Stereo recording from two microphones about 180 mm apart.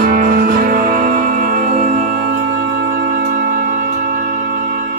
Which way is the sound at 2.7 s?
55° right (ahead or behind).